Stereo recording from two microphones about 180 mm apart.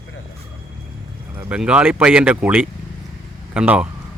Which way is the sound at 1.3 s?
10° right (ahead or behind).